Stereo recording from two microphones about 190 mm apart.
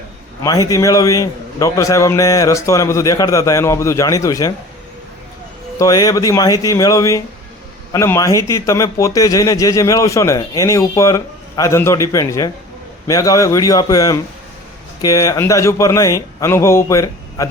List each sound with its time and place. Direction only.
0.4 s a man's voice: 15° left (ahead or behind)
5.8 s a man's voice: 20° left (ahead or behind)